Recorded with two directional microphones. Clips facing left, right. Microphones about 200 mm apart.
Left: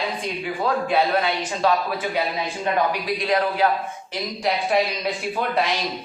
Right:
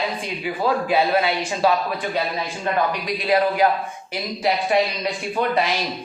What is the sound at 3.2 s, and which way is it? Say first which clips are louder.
A man's voice: right 3 dB; 10° right (ahead or behind).